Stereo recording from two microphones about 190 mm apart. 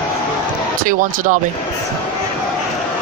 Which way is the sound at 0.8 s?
45° right (ahead or behind).